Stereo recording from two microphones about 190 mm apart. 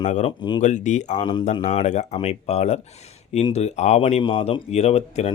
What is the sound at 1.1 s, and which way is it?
Speech, 25° left (ahead or behind).